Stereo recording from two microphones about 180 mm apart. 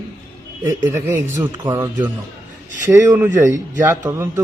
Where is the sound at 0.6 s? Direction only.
15° right (ahead or behind).